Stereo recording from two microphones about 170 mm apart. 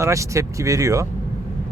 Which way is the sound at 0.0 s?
20° right (ahead or behind).